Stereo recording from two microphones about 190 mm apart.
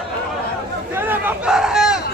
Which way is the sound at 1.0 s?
10° right (ahead or behind).